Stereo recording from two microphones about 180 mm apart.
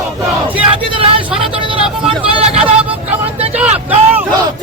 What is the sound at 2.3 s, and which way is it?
Speech, 35° right (ahead or behind).